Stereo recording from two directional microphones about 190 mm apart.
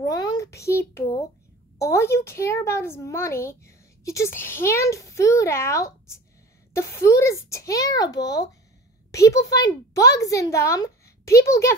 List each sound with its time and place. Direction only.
0.0 s a child's voice: 20° left (ahead or behind)